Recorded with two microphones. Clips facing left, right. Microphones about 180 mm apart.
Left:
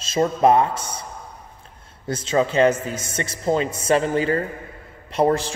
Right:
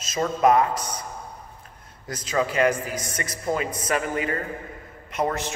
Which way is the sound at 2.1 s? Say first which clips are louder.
Left 5 dB; 25° left (ahead or behind).